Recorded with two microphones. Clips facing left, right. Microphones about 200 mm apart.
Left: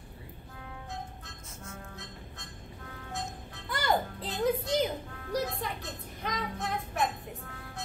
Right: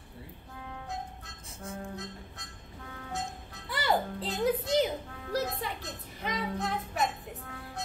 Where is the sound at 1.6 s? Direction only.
35° right (ahead or behind).